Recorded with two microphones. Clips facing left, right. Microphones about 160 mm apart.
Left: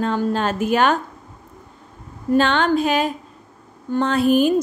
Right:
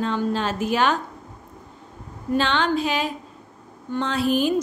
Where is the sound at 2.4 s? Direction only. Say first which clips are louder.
Left 4 dB; 50° left (ahead or behind).